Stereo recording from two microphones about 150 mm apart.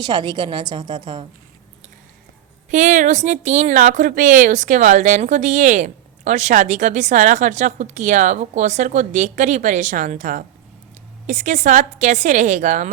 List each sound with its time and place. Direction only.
0.0 s a woman's voice: 30° right (ahead or behind)
2.6 s a woman's voice: 55° right (ahead or behind)